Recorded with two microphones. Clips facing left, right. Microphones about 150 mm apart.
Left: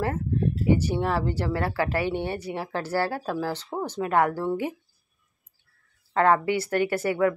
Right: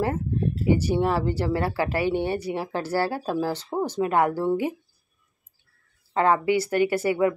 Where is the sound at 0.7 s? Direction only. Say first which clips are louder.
Right 3 dB; 15° right (ahead or behind).